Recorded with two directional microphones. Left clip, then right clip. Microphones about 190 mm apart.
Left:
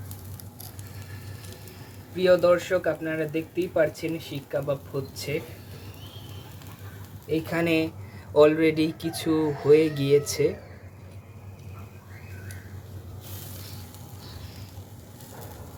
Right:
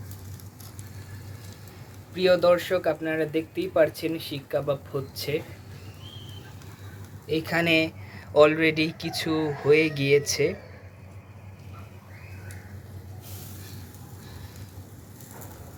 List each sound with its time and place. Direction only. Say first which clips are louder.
2.1 s speech: even; 15° right (ahead or behind)
7.3 s speech: right 2 dB; 5° right (ahead or behind)